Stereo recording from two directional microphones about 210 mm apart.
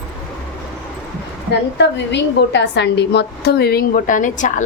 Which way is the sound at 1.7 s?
55° left (ahead or behind).